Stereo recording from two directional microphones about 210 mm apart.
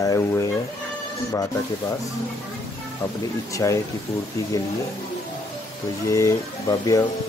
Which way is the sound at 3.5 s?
15° left (ahead or behind).